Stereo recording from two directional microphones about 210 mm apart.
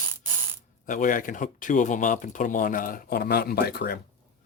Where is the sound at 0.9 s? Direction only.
40° left (ahead or behind).